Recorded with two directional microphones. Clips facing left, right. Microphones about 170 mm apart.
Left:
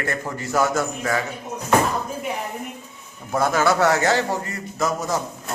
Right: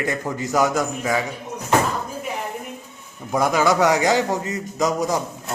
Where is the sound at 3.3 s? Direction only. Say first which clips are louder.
Right 1 dB; 15° right (ahead or behind).